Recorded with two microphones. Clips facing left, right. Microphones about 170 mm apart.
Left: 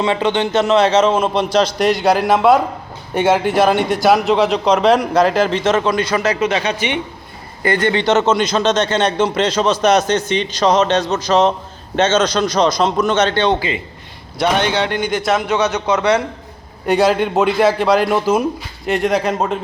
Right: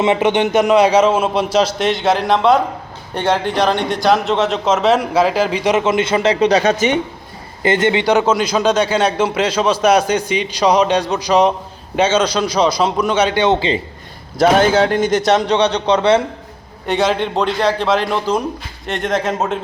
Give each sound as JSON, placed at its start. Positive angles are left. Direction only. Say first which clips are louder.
{"t": 0.0, "sound": "a man's voice", "louder": "right 2 dB", "side_deg": -20}
{"t": 7.6, "sound": "a man's voice", "louder": "right 1 dB", "side_deg": -20}
{"t": 14.3, "sound": "a man's voice", "louder": "right 5 dB", "side_deg": -45}
{"t": 16.8, "sound": "a man's voice", "louder": "left 3 dB", "side_deg": 5}